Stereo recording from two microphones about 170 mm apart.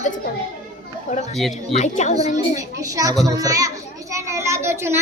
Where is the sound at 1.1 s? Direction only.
40° left (ahead or behind).